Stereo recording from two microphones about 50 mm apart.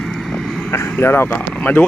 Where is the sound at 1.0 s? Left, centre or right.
Left.